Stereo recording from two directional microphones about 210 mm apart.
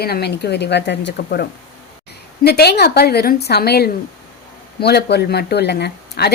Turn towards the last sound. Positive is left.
turn(degrees=50)  # may be behind; listen again after turning